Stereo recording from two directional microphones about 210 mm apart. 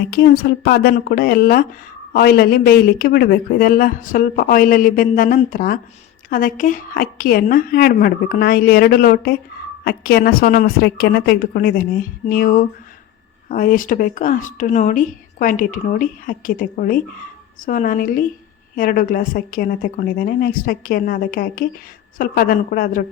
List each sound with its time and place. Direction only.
0.1 s speech: 45° left (ahead or behind)